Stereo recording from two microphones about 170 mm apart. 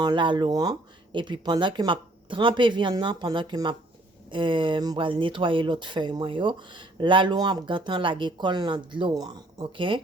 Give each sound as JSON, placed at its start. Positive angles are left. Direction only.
{"t": 0.0, "sound": "speech", "side_deg": -30}